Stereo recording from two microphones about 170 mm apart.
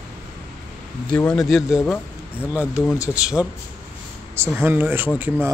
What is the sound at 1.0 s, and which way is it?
Speech, 5° left (ahead or behind).